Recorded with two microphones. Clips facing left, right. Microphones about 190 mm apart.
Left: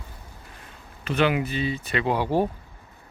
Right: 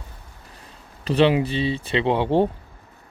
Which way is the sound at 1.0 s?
30° right (ahead or behind).